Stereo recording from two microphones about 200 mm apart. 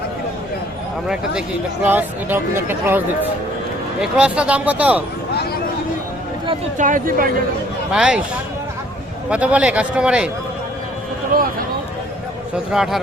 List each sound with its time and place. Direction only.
1.0 s speech: 5° right (ahead or behind)
4.0 s speech: 5° right (ahead or behind)
6.7 s speech: 40° right (ahead or behind)
7.9 s a man's voice: 5° right (ahead or behind)
9.3 s a man's voice: 5° right (ahead or behind)
12.7 s a man's voice: centre (ahead or behind)